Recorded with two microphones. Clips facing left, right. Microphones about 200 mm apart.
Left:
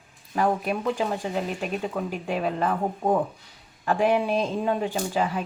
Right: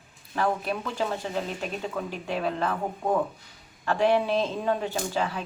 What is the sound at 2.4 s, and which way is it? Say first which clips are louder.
Speech: left 2 dB; 10° left (ahead or behind).